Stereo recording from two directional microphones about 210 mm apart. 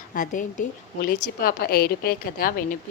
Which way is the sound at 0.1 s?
40° left (ahead or behind).